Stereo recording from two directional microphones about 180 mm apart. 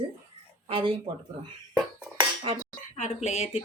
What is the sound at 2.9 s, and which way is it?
Speech, 40° left (ahead or behind).